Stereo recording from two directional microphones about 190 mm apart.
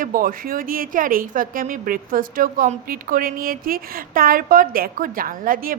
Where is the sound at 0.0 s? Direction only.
50° right (ahead or behind).